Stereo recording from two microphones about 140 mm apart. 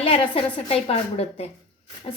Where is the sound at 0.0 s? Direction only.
40° left (ahead or behind).